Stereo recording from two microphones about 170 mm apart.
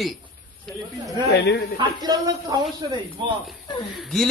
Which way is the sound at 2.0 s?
25° right (ahead or behind).